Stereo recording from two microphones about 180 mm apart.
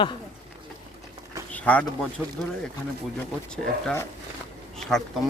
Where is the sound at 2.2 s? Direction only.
5° right (ahead or behind).